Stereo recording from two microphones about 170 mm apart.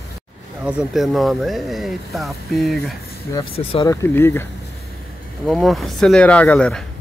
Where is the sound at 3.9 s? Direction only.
15° left (ahead or behind).